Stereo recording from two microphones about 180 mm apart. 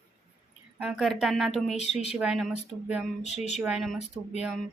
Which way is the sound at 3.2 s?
40° left (ahead or behind).